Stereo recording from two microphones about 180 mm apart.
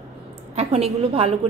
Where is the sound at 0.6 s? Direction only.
35° right (ahead or behind).